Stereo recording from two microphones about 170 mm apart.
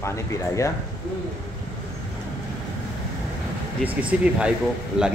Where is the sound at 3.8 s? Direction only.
10° right (ahead or behind).